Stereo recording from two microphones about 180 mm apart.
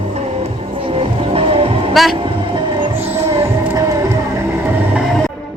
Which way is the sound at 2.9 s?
15° right (ahead or behind).